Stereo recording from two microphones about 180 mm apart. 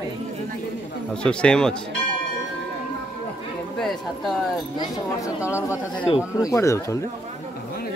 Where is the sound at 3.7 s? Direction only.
Centre (ahead or behind).